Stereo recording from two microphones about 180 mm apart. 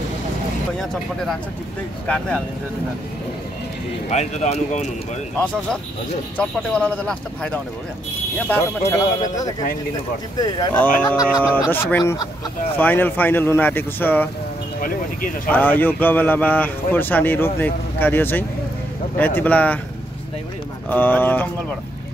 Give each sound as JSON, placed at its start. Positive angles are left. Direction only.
{"t": 2.0, "sound": "speech", "side_deg": 5}
{"t": 4.1, "sound": "speech", "side_deg": 40}
{"t": 5.4, "sound": "a man's voice", "side_deg": 5}
{"t": 8.5, "sound": "a man's voice", "side_deg": 15}
{"t": 11.2, "sound": "a man's voice", "side_deg": 10}
{"t": 15.5, "sound": "a man's voice", "side_deg": 10}
{"t": 20.9, "sound": "a man's voice", "side_deg": 10}